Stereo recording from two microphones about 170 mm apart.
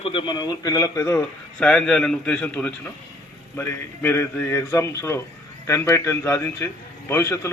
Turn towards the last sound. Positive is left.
turn(degrees=15)  # may be behind; listen again after turning